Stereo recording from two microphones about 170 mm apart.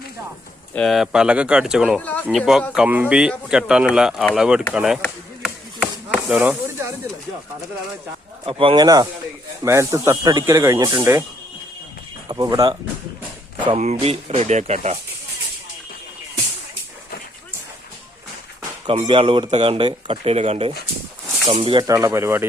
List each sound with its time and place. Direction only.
0.7 s speech: 5° left (ahead or behind)
2.0 s speech: 10° left (ahead or behind)
2.2 s speech: 5° right (ahead or behind)
5.4 s chopping: 5° right (ahead or behind)
8.4 s speech: 30° right (ahead or behind)
12.3 s speech: 20° right (ahead or behind)
13.7 s speech: 40° right (ahead or behind)
18.9 s speech: 30° right (ahead or behind); by 22.4 s 15° right (ahead or behind)